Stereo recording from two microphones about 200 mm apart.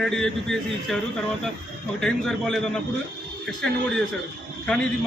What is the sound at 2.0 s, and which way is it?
A man's voice, 5° left (ahead or behind).